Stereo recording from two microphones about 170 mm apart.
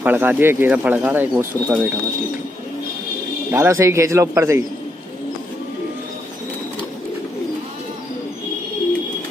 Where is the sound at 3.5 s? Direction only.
15° right (ahead or behind).